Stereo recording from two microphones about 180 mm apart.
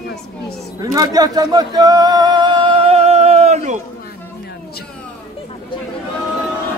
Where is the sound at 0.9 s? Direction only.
20° right (ahead or behind); by 3.7 s 40° right (ahead or behind).